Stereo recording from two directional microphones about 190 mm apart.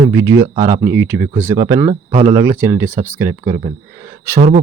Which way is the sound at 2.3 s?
10° right (ahead or behind).